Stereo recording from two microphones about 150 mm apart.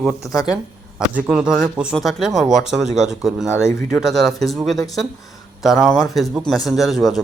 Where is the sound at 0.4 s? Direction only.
5° right (ahead or behind).